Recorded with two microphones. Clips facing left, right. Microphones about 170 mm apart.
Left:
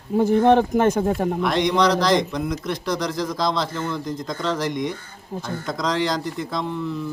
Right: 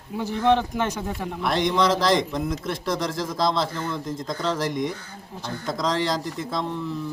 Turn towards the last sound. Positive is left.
turn(degrees=0)  # may be behind; listen again after turning